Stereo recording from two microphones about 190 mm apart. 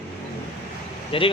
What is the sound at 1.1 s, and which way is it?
Speech, 30° left (ahead or behind).